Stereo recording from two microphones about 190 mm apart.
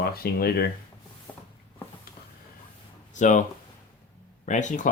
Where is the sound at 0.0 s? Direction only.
55° left (ahead or behind).